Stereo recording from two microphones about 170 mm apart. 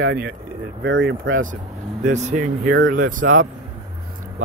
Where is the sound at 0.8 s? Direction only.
90° right.